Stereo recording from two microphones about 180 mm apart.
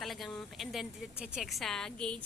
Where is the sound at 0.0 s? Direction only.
Centre (ahead or behind).